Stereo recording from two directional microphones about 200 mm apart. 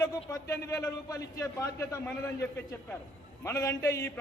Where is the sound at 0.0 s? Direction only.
15° left (ahead or behind).